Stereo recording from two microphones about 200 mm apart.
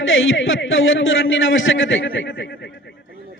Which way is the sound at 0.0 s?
70° left (ahead or behind).